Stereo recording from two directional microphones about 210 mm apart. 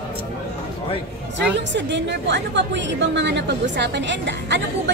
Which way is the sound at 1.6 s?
55° right (ahead or behind).